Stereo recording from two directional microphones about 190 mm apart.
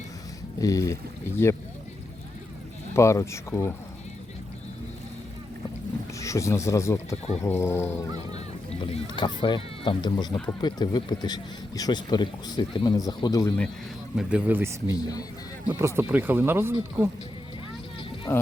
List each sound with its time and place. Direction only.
0.6 s speech: 20° left (ahead or behind)
2.9 s speech: 15° left (ahead or behind)
6.1 s speech: 15° left (ahead or behind)
9.0 s speech: 25° left (ahead or behind)
14.2 s speech: 5° right (ahead or behind)
18.3 s speech: 10° left (ahead or behind)